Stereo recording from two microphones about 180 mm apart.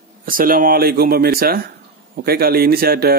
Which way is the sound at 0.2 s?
50° right (ahead or behind).